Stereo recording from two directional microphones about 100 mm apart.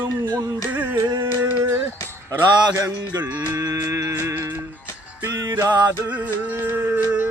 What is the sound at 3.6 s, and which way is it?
Music, 35° right (ahead or behind).